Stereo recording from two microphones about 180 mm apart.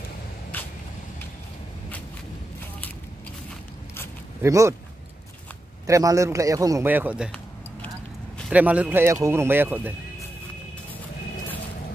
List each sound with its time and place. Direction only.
0.5 s vehicle: 10° left (ahead or behind)
4.4 s speech: 15° right (ahead or behind)
5.9 s speech: 15° right (ahead or behind)
8.5 s speech: 10° right (ahead or behind)